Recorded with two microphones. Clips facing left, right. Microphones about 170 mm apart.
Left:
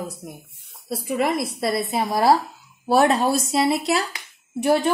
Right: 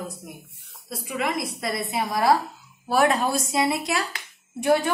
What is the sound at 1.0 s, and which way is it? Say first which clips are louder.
A woman's voice: left 5 dB; 35° left (ahead or behind).